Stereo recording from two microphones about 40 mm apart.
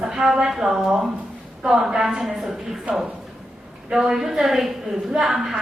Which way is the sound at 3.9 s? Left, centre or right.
Centre.